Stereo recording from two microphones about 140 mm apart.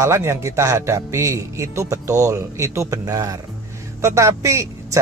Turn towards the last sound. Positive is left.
turn(degrees=-20)  # may be behind; listen again after turning